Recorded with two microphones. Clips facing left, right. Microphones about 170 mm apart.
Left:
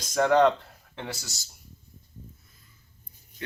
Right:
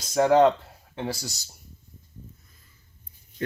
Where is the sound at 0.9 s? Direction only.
30° right (ahead or behind).